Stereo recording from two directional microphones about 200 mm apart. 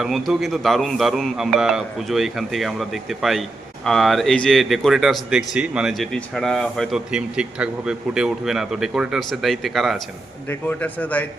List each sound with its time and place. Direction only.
0.0 s a man's voice: centre (ahead or behind)